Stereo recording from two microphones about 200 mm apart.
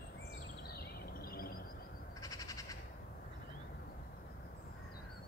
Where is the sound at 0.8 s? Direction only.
50° left (ahead or behind).